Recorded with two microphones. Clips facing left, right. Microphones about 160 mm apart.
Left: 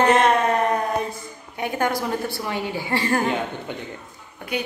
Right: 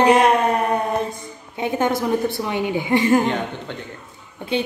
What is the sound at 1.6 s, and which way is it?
A woman's voice, 20° right (ahead or behind).